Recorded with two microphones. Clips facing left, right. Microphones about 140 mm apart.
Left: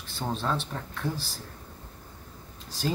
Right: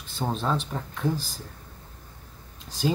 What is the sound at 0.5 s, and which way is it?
Speech, 15° right (ahead or behind).